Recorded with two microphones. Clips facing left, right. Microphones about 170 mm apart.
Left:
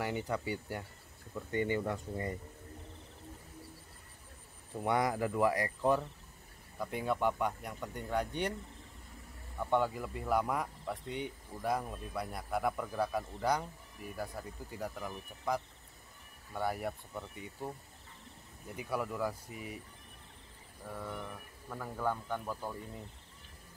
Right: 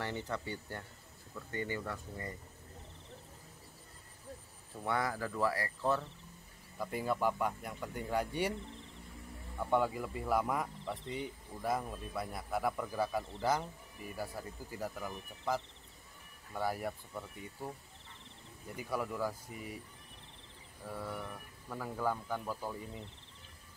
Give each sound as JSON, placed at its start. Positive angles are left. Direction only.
{"t": 0.0, "sound": "speech", "side_deg": 10}
{"t": 4.8, "sound": "speech", "side_deg": 20}
{"t": 6.8, "sound": "speech", "side_deg": 0}
{"t": 9.7, "sound": "speech", "side_deg": -5}
{"t": 18.8, "sound": "speech", "side_deg": 0}
{"t": 20.9, "sound": "speech", "side_deg": -5}